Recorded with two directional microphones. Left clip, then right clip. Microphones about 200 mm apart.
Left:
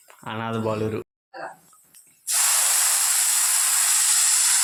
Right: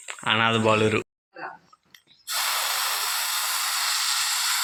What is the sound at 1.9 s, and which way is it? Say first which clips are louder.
Hiss: left 2 dB; 20° right (ahead or behind).